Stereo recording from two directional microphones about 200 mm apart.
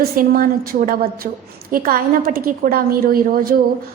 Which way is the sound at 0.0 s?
45° right (ahead or behind).